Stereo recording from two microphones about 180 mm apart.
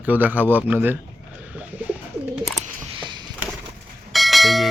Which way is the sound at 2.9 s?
25° right (ahead or behind).